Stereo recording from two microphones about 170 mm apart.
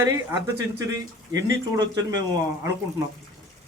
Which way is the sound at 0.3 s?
20° right (ahead or behind).